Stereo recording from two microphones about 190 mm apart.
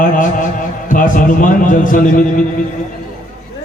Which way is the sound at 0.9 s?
45° left (ahead or behind).